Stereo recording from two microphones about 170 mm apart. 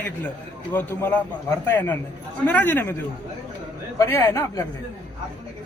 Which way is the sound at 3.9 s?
15° left (ahead or behind).